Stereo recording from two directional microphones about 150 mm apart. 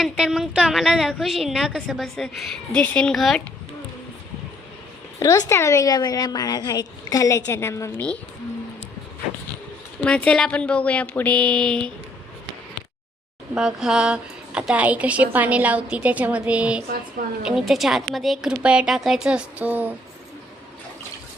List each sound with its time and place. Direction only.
0.0 s speech: 5° right (ahead or behind)
5.2 s a woman's voice: 20° left (ahead or behind)
10.0 s a woman's voice: 10° left (ahead or behind)
13.6 s a woman's voice: 5° right (ahead or behind)